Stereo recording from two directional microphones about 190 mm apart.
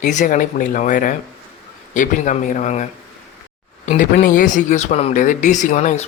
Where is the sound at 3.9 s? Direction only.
40° left (ahead or behind).